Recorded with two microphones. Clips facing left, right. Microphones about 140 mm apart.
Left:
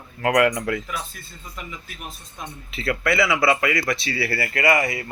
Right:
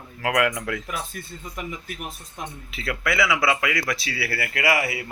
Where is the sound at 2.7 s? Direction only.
Centre (ahead or behind).